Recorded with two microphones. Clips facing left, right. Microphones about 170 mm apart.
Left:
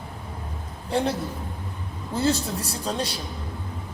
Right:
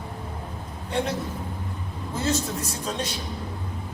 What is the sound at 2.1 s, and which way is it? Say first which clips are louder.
Speech: left 3 dB; 35° left (ahead or behind).